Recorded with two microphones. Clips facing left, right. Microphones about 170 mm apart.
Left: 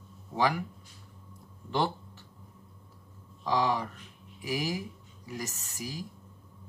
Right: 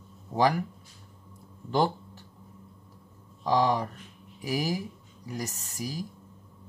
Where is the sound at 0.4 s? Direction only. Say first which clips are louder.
Right 4 dB; 40° right (ahead or behind).